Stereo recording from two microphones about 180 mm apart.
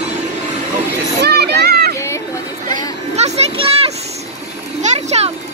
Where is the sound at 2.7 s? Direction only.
35° right (ahead or behind).